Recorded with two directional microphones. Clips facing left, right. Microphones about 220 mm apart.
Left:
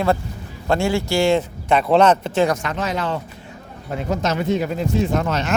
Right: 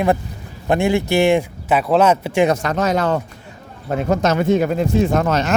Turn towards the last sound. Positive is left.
turn(degrees=-45)  # may be behind; listen again after turning